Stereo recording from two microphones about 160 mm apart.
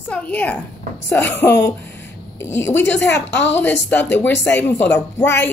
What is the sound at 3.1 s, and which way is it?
Speech, 90° left.